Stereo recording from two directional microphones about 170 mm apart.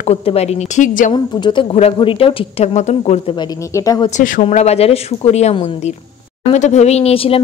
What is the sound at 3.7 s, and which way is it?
Speech, 20° left (ahead or behind).